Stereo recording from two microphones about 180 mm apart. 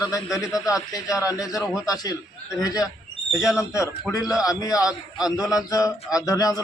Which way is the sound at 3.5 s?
15° left (ahead or behind).